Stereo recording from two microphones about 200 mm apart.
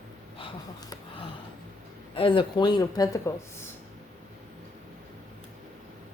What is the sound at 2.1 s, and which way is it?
Speech, 25° left (ahead or behind).